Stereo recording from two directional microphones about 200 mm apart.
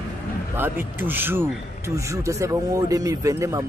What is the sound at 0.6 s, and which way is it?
Speech, 10° right (ahead or behind).